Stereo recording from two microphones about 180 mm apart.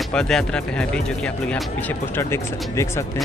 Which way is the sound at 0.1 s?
5° left (ahead or behind).